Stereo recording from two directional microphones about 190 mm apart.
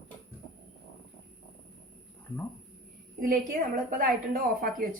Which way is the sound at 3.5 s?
45° right (ahead or behind).